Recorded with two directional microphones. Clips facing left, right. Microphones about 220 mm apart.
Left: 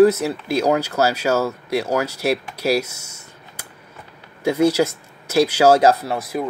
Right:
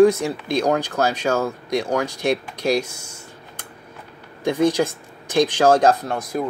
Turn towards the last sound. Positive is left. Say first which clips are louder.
# even
turn(degrees=5)  # may be behind; listen again after turning